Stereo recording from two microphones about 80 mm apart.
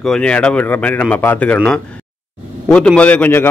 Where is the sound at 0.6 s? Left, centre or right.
Left.